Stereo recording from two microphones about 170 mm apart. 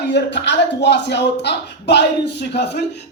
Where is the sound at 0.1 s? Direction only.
90° left.